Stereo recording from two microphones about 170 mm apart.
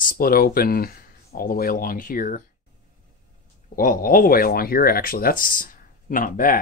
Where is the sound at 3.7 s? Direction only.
55° left (ahead or behind).